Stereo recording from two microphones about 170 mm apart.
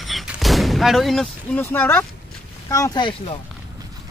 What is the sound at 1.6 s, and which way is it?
Speech, 10° left (ahead or behind).